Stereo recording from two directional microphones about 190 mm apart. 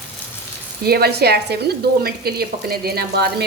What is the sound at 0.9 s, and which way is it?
Speech, 55° right (ahead or behind).